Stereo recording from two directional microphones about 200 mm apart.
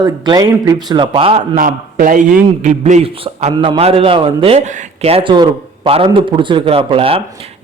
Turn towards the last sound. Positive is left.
turn(degrees=-30)  # may be behind; listen again after turning